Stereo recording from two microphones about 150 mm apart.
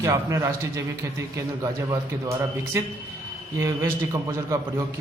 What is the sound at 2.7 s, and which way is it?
A man's voice, 20° right (ahead or behind).